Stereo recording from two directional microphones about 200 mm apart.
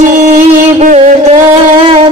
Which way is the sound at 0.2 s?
35° right (ahead or behind).